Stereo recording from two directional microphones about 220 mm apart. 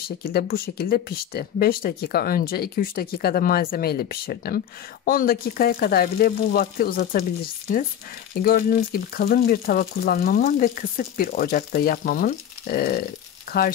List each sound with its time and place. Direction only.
0.0 s speech: 45° left (ahead or behind)
13.5 s rattle: 45° left (ahead or behind)